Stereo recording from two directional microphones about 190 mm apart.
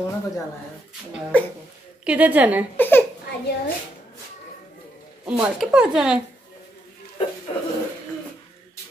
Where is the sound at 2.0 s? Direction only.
10° right (ahead or behind).